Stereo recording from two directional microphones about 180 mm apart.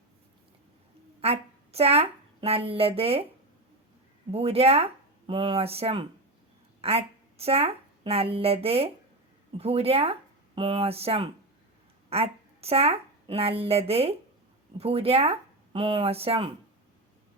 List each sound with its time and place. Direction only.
1.2 s speech: 35° right (ahead or behind)
4.3 s a woman's voice: 35° right (ahead or behind)